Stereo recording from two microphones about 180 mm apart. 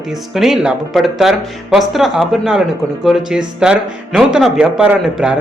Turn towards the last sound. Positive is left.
turn(degrees=-5)  # may be behind; listen again after turning